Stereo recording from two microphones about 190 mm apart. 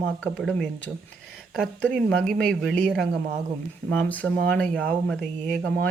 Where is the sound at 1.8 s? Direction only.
5° left (ahead or behind).